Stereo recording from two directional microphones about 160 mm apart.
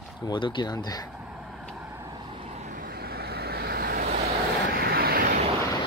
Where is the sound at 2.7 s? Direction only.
65° right (ahead or behind).